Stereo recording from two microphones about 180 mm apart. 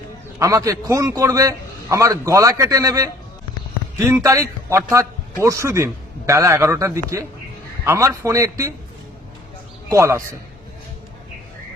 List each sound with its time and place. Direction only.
0.3 s a man's voice: 15° right (ahead or behind)
9.9 s a man's voice: 15° right (ahead or behind)